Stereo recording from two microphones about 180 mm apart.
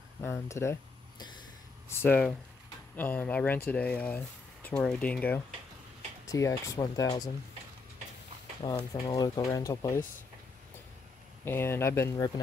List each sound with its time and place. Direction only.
0.2 s speech: 15° left (ahead or behind)
8.6 s speech: 30° left (ahead or behind); by 10.0 s 15° left (ahead or behind)
11.4 s speech: 10° left (ahead or behind)